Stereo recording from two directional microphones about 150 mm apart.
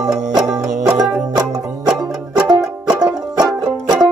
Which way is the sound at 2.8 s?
25° right (ahead or behind).